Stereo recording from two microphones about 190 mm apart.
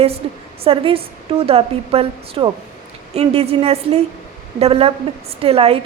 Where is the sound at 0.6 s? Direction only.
30° right (ahead or behind).